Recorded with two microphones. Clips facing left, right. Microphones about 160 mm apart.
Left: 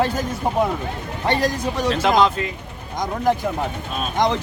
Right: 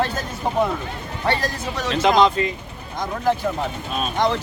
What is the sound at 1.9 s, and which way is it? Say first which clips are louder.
Speech: right 2 dB; 5° left (ahead or behind).